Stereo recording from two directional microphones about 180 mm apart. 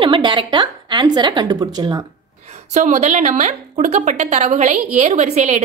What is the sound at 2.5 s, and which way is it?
A woman's voice, 40° right (ahead or behind).